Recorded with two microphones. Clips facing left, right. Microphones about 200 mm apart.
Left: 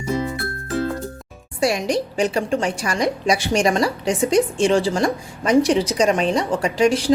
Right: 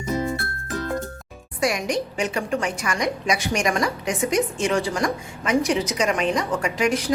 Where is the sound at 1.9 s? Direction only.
35° left (ahead or behind).